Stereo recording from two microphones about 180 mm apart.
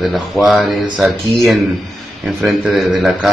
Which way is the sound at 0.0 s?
Centre (ahead or behind).